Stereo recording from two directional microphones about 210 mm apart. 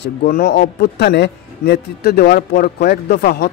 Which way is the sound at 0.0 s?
45° left (ahead or behind).